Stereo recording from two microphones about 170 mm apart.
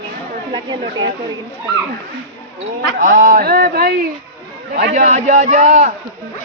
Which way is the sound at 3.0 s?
50° right (ahead or behind).